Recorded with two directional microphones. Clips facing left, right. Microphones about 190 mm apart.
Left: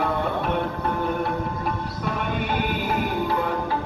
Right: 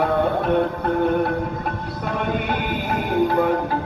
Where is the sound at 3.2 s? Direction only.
55° right (ahead or behind).